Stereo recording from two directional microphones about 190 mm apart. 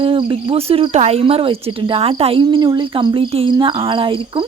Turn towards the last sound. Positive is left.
turn(degrees=-25)  # may be behind; listen again after turning